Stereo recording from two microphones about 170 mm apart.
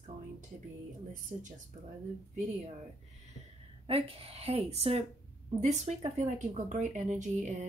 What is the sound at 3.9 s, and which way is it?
Speech, 35° right (ahead or behind).